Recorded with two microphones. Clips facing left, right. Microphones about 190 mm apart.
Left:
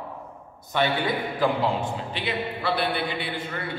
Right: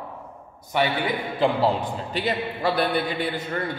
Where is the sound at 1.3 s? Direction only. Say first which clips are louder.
Right 4 dB; 40° right (ahead or behind).